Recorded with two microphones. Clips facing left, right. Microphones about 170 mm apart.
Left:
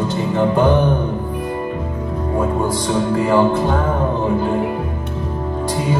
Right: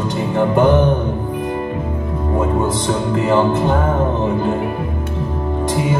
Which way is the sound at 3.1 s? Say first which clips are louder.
Even; 20° right (ahead or behind).